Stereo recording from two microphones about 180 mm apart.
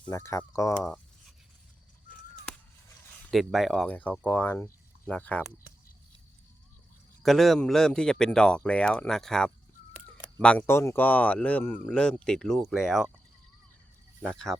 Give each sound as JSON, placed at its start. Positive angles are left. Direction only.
{"t": 0.1, "sound": "speech", "side_deg": 15}
{"t": 3.3, "sound": "speech", "side_deg": 0}
{"t": 7.2, "sound": "speech", "side_deg": 0}
{"t": 14.2, "sound": "speech", "side_deg": 5}